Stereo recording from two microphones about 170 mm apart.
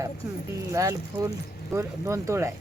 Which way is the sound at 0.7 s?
20° right (ahead or behind).